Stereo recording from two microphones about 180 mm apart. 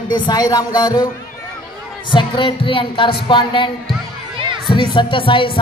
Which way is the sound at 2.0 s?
25° left (ahead or behind).